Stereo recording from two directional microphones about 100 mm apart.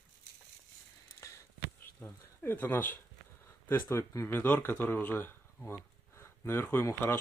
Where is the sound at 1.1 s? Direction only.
30° left (ahead or behind).